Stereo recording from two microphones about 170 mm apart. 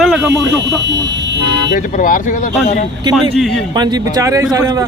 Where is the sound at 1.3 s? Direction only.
90° right.